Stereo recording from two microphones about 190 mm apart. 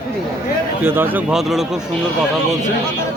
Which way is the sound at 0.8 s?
10° right (ahead or behind).